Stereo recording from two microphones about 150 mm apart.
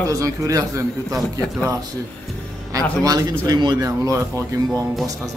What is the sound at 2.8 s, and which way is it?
Speech, 25° right (ahead or behind).